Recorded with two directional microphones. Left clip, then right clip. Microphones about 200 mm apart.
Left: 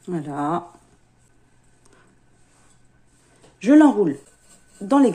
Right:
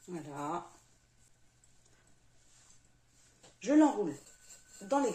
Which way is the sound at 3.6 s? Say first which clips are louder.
Left 13 dB; 60° left (ahead or behind).